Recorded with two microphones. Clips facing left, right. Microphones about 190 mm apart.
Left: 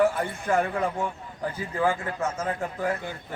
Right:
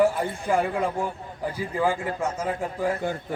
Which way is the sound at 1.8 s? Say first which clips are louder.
Right 1 dB; 15° right (ahead or behind).